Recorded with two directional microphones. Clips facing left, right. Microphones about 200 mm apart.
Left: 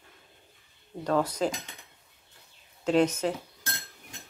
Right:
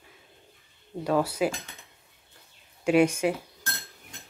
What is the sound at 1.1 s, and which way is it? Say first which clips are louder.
Speech: right 1 dB; 10° right (ahead or behind).